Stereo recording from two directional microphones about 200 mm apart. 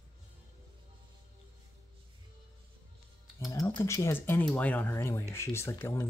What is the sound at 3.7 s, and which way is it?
Speech, 15° left (ahead or behind).